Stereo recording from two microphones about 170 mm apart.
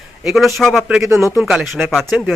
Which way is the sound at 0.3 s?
Centre (ahead or behind).